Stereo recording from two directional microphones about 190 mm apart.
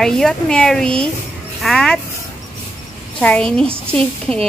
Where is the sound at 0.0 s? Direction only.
Centre (ahead or behind).